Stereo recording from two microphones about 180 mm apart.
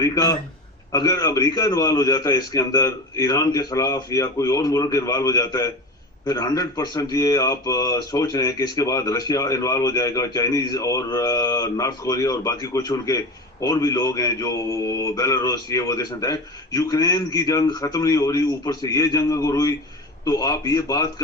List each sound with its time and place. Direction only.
0.0 s speech: 20° left (ahead or behind)